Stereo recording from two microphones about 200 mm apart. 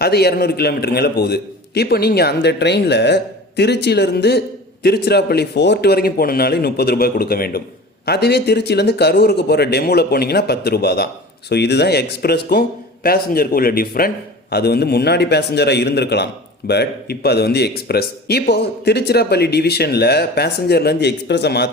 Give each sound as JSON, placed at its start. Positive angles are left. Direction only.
{"t": 0.0, "sound": "a man's voice", "side_deg": 55}